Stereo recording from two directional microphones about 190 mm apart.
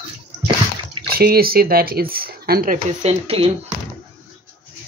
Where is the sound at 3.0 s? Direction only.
30° right (ahead or behind).